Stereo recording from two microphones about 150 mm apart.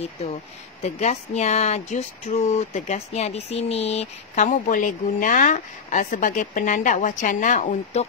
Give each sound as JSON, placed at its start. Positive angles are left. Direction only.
{"t": 0.8, "sound": "speech", "side_deg": 50}